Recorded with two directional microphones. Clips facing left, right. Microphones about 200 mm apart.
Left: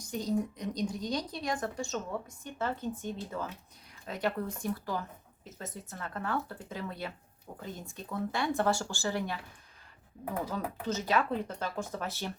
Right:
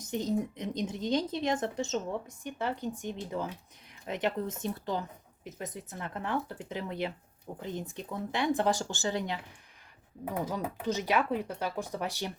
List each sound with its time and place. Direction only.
0.0 s a woman's voice: 25° right (ahead or behind)